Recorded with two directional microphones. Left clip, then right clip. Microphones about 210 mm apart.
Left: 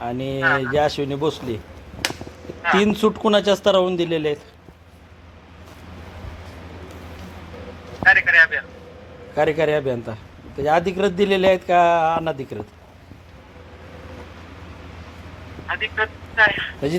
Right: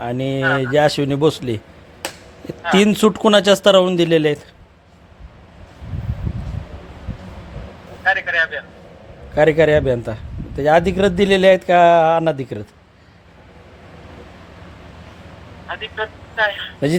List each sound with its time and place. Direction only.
0.0 s speech: 50° right (ahead or behind)
2.7 s a man's voice: 55° right (ahead or behind)
8.0 s a man's voice: centre (ahead or behind)
9.3 s speech: 45° right (ahead or behind)
15.6 s a man's voice: centre (ahead or behind)
16.8 s speech: 50° right (ahead or behind)